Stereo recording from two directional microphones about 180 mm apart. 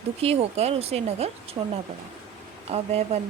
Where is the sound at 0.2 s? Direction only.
35° right (ahead or behind).